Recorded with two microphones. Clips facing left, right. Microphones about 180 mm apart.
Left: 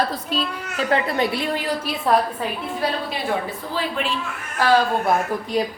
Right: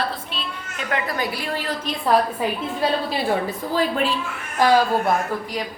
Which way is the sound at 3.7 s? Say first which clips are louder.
Right 4 dB; 40° right (ahead or behind).